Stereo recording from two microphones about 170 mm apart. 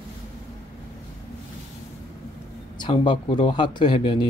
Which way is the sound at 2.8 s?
25° left (ahead or behind).